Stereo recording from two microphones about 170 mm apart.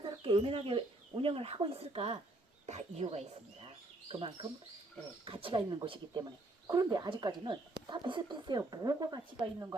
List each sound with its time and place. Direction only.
0.0 s speech: 30° right (ahead or behind)